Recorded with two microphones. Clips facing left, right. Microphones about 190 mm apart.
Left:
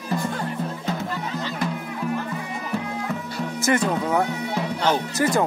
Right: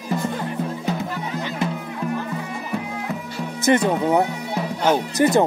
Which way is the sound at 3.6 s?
20° right (ahead or behind).